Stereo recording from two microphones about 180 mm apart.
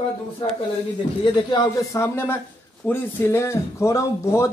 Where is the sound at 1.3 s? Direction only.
20° left (ahead or behind).